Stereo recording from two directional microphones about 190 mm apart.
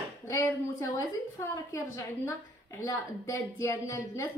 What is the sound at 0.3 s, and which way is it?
A woman's voice, 15° left (ahead or behind).